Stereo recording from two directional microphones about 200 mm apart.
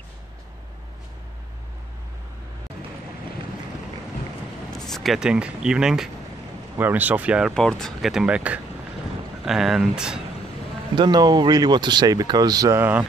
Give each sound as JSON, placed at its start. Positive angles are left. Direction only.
{"t": 4.7, "sound": "speech", "side_deg": 0}
{"t": 11.0, "sound": "speech", "side_deg": -20}